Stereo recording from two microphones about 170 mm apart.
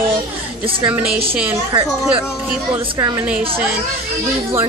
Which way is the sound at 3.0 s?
20° right (ahead or behind).